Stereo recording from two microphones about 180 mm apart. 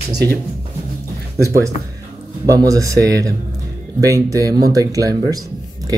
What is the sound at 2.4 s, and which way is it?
Speech, 20° right (ahead or behind).